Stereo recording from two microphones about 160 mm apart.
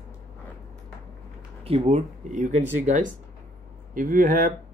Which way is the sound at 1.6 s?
40° right (ahead or behind).